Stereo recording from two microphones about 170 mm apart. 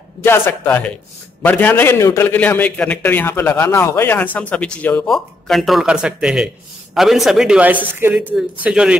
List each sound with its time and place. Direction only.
0.2 s a man's voice: 15° left (ahead or behind); by 8.9 s 5° right (ahead or behind)